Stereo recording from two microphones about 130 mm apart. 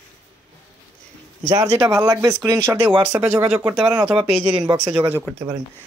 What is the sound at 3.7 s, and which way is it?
Speech, 5° right (ahead or behind).